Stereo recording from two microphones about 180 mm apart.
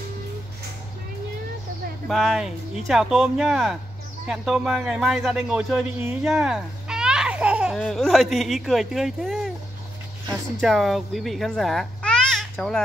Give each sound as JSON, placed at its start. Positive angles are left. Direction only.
{"t": 2.0, "sound": "speech", "side_deg": 0}